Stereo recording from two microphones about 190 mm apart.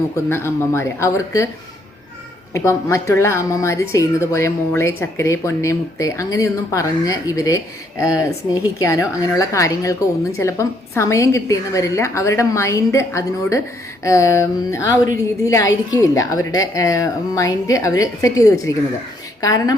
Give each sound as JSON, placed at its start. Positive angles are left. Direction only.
{"t": 0.3, "sound": "a woman's voice", "side_deg": 15}
{"t": 2.5, "sound": "a woman's voice", "side_deg": 15}